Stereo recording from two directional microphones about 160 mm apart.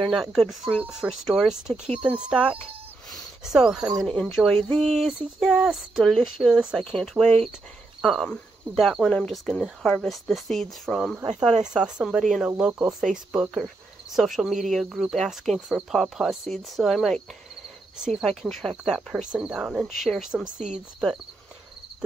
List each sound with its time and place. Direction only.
0.1 s speech: centre (ahead or behind)
1.7 s speech: 35° right (ahead or behind)
2.0 s speech: 5° right (ahead or behind)
3.1 s a sound: 5° right (ahead or behind)
4.0 s speech: 5° left (ahead or behind)
7.2 s speech: 45° right (ahead or behind)
8.0 s speech: centre (ahead or behind)
18.2 s speech: centre (ahead or behind)
20.5 s speech: 50° right (ahead or behind)